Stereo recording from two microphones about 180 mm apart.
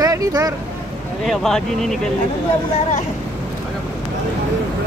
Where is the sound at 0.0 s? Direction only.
20° right (ahead or behind).